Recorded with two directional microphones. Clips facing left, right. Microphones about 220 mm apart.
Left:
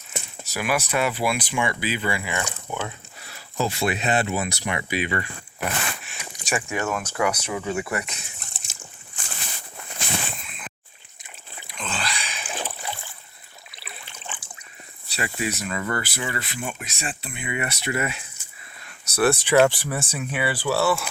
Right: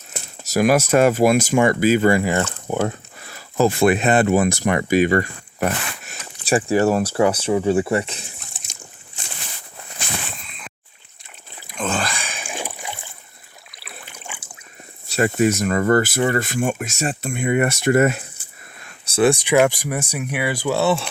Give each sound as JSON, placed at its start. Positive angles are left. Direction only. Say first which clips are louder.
{"t": 0.4, "sound": "speech", "louder": "right 10 dB", "side_deg": -40}
{"t": 6.4, "sound": "speech", "louder": "right 10 dB", "side_deg": -35}
{"t": 8.4, "sound": "trickle", "louder": "right 2 dB", "side_deg": 0}
{"t": 10.4, "sound": "a sound", "louder": "even", "side_deg": 5}
{"t": 11.7, "sound": "a sound", "louder": "right 8 dB", "side_deg": -45}
{"t": 12.4, "sound": "rowboat", "louder": "right 2 dB", "side_deg": -10}
{"t": 13.7, "sound": "a sound", "louder": "right 3 dB", "side_deg": 0}
{"t": 14.1, "sound": "boat", "louder": "even", "side_deg": -10}
{"t": 15.0, "sound": "speech", "louder": "right 11 dB", "side_deg": -45}
{"t": 19.1, "sound": "speech", "louder": "right 3 dB", "side_deg": -15}